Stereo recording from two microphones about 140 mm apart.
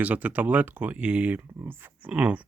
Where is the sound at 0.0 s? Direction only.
10° right (ahead or behind).